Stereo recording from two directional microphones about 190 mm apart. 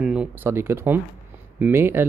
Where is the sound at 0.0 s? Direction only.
5° right (ahead or behind).